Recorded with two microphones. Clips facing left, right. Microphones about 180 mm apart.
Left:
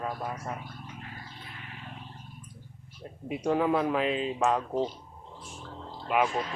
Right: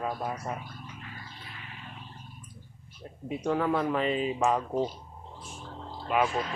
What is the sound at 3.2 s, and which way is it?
Speech, 10° left (ahead or behind).